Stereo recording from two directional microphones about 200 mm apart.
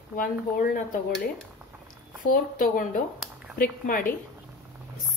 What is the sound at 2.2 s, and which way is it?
A woman's voice, 45° left (ahead or behind).